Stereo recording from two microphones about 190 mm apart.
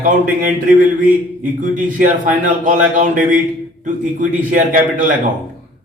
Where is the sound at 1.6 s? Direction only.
45° right (ahead or behind).